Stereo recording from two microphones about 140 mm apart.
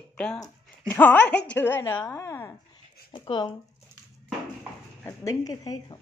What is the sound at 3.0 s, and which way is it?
Speech, 35° left (ahead or behind).